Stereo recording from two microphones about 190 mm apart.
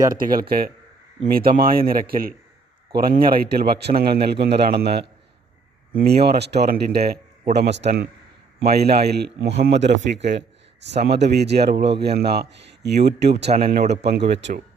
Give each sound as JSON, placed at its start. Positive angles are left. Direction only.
{"t": 0.2, "sound": "a man's voice", "side_deg": -50}
{"t": 13.7, "sound": "a man's voice", "side_deg": -50}